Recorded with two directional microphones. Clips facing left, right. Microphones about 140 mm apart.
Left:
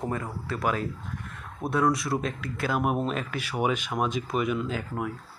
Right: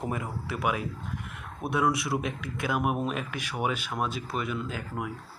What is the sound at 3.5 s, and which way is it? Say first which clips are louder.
Speech: left 4 dB; 5° left (ahead or behind).